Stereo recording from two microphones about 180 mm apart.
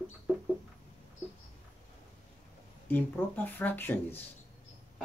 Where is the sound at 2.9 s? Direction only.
10° left (ahead or behind).